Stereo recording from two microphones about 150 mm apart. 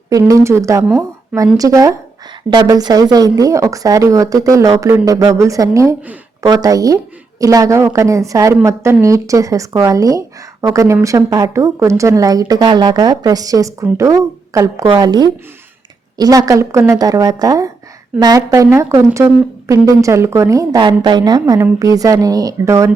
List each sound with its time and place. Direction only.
0.1 s a woman's voice: 20° right (ahead or behind)